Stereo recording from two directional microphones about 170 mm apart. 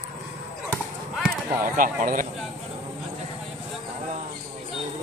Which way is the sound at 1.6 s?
50° right (ahead or behind).